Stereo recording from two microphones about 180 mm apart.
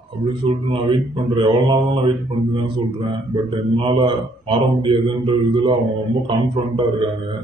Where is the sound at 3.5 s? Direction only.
25° right (ahead or behind).